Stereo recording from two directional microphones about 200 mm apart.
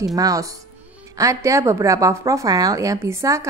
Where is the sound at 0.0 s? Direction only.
15° right (ahead or behind).